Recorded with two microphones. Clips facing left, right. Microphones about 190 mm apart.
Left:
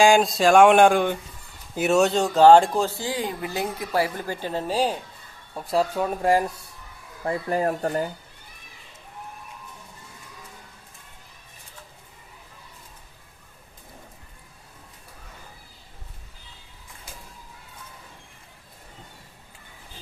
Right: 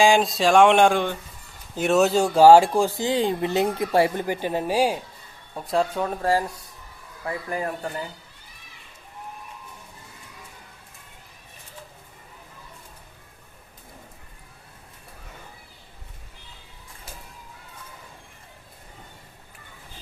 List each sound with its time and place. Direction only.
0.0 s speech: centre (ahead or behind)
5.5 s speech: centre (ahead or behind)
6.2 s speech: 15° left (ahead or behind)
7.3 s speech: 30° left (ahead or behind)